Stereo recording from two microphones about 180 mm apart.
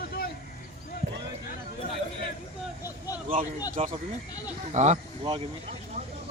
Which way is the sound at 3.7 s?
45° right (ahead or behind).